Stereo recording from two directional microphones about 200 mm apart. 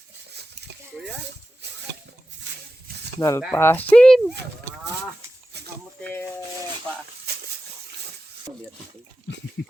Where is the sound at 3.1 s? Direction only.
15° left (ahead or behind).